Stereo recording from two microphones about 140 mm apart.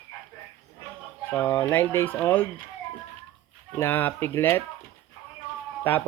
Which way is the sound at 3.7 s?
15° left (ahead or behind).